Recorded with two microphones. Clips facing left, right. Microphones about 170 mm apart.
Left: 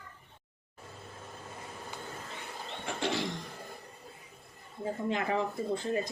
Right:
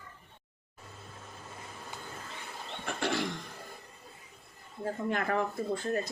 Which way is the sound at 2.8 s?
20° left (ahead or behind).